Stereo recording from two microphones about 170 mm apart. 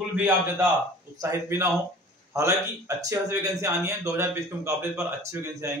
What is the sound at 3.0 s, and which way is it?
A man's voice, 20° right (ahead or behind).